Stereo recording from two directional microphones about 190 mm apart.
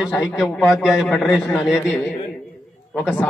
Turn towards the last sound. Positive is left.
turn(degrees=5)  # may be behind; listen again after turning